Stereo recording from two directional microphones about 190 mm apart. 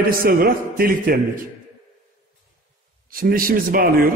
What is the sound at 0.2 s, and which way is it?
A man's voice, 50° right (ahead or behind).